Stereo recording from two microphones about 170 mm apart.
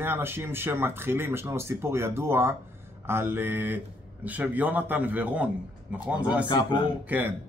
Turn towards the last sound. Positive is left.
turn(degrees=-10)  # may be behind; listen again after turning